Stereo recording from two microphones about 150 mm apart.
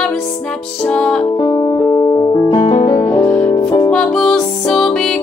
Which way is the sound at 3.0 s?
10° left (ahead or behind).